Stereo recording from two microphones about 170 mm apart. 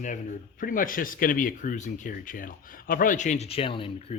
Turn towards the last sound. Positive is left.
turn(degrees=30)  # may be behind; listen again after turning